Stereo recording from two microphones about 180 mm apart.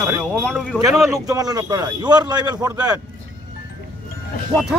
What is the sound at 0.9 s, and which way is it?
A man's voice, 20° right (ahead or behind).